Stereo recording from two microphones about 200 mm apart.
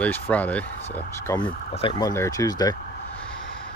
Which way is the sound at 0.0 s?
5° left (ahead or behind).